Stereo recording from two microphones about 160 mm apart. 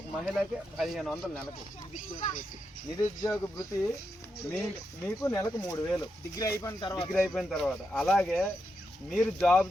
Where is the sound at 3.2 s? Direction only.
20° left (ahead or behind).